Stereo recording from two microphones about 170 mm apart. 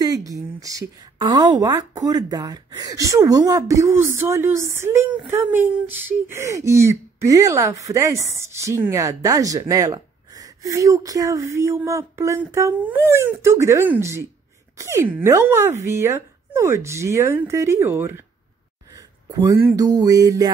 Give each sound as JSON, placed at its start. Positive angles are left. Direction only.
{"t": 0.0, "sound": "a woman's voice", "side_deg": -20}